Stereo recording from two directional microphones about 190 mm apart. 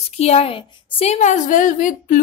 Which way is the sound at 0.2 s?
30° left (ahead or behind).